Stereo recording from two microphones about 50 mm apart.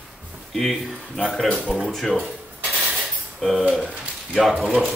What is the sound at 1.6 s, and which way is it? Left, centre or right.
Speech, centre.